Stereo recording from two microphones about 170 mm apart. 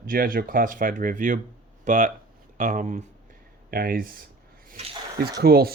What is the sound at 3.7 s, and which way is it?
Speech, 55° right (ahead or behind).